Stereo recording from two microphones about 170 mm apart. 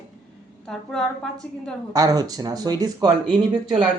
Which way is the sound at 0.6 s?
5° left (ahead or behind).